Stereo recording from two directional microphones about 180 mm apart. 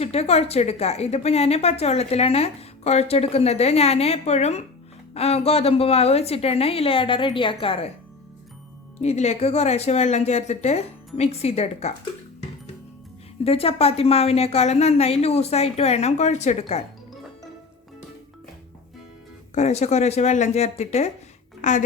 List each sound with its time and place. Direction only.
0.0 s a woman's voice: 35° left (ahead or behind)
9.0 s a woman's voice: 40° left (ahead or behind)
13.4 s a woman's voice: 30° left (ahead or behind)
19.5 s a woman's voice: 40° left (ahead or behind)